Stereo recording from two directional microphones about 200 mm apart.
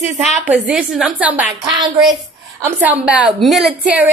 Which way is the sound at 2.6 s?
10° right (ahead or behind).